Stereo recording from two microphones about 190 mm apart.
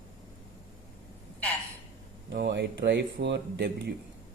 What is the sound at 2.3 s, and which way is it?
Speech, 65° right (ahead or behind).